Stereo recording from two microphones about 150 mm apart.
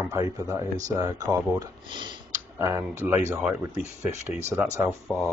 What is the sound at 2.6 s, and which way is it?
Speech, 20° right (ahead or behind).